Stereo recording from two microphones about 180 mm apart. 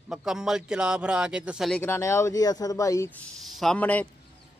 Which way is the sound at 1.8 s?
15° left (ahead or behind).